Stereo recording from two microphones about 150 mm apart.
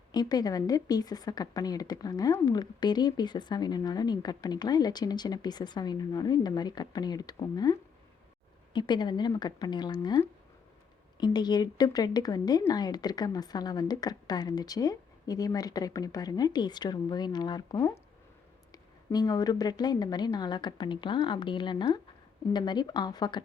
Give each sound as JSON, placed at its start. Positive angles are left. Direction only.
{"t": 0.1, "sound": "speech", "side_deg": 25}